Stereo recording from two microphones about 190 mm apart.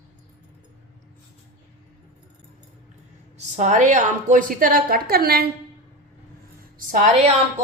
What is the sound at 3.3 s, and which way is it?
A woman's voice, 40° right (ahead or behind).